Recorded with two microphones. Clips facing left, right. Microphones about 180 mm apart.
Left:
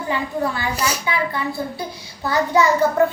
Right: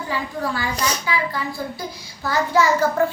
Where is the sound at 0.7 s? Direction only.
10° left (ahead or behind).